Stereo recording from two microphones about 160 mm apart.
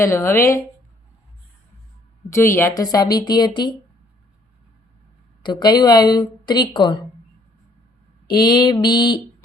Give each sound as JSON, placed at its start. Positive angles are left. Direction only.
{"t": 0.0, "sound": "speech", "side_deg": 15}
{"t": 2.3, "sound": "a woman's voice", "side_deg": 15}
{"t": 5.4, "sound": "a woman's voice", "side_deg": 25}
{"t": 8.3, "sound": "a woman's voice", "side_deg": 25}